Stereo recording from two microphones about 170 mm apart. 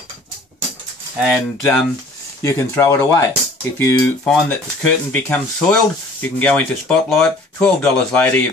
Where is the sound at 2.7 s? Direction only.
10° left (ahead or behind).